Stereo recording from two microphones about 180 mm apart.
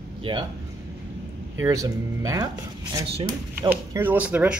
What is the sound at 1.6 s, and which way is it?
Speech, 20° right (ahead or behind).